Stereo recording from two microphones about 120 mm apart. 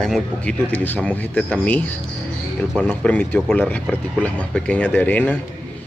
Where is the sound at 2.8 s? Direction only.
10° left (ahead or behind).